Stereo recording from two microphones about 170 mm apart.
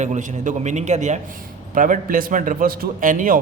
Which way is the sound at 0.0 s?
45° right (ahead or behind).